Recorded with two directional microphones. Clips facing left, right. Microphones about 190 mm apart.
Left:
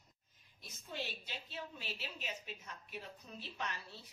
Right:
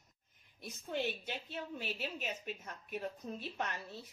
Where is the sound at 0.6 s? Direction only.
55° right (ahead or behind).